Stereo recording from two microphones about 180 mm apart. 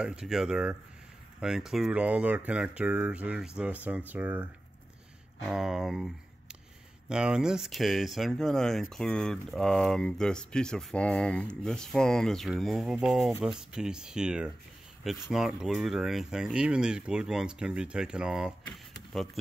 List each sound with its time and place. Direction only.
0.0 s speech: 5° right (ahead or behind)